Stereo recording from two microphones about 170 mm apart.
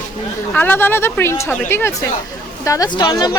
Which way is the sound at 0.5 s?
10° left (ahead or behind).